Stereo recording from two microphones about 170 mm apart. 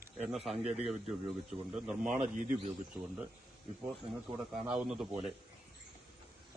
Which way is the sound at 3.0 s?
5° right (ahead or behind).